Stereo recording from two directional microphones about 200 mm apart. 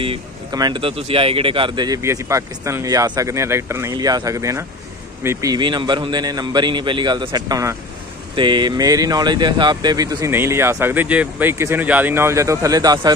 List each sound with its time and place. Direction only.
0.0 s a man's voice: 25° right (ahead or behind)